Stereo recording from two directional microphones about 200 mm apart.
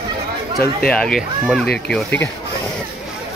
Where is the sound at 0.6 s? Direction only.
5° left (ahead or behind).